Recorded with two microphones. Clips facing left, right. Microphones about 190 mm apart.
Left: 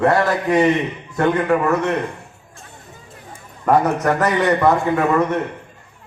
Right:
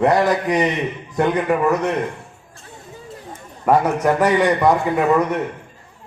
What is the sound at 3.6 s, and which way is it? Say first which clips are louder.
A man's voice: even; 10° right (ahead or behind).